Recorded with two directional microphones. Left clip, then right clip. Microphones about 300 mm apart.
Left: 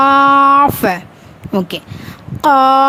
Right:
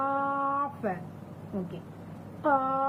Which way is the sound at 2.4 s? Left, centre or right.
Left.